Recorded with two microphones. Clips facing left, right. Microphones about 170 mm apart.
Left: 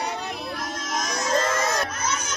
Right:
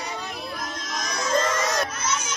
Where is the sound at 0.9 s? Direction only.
45° left (ahead or behind).